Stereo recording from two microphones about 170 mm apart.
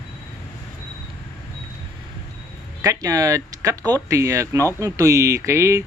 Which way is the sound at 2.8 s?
20° right (ahead or behind).